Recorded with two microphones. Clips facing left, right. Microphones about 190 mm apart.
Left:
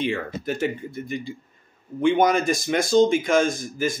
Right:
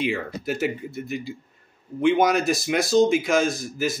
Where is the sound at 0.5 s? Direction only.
5° right (ahead or behind).